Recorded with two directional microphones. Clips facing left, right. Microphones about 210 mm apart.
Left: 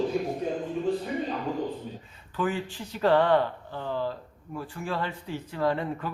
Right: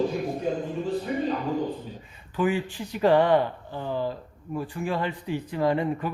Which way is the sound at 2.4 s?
15° right (ahead or behind).